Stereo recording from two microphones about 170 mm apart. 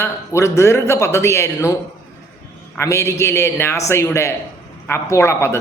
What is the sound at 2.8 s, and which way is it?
Speech, 15° left (ahead or behind).